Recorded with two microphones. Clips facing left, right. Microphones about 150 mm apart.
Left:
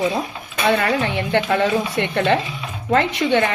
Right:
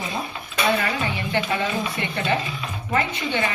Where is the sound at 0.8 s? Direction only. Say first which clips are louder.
Left 6 dB; 65° left (ahead or behind).